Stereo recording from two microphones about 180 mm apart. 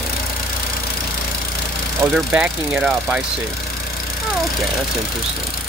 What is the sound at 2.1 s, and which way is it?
Speech, 5° right (ahead or behind).